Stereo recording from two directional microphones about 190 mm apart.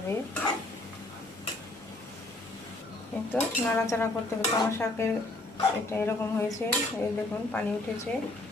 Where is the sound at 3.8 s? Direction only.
10° left (ahead or behind).